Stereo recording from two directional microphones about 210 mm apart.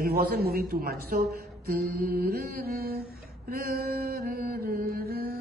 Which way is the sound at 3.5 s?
45° right (ahead or behind).